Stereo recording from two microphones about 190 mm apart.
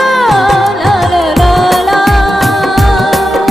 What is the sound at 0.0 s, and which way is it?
Music, centre (ahead or behind).